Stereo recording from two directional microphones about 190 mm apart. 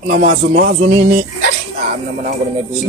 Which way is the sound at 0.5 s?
45° right (ahead or behind).